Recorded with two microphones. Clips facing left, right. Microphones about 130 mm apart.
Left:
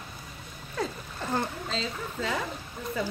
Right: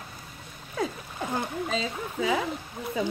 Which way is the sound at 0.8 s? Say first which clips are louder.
Right 2 dB; 10° right (ahead or behind).